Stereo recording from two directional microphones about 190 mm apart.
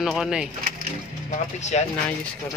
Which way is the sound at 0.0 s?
5° right (ahead or behind).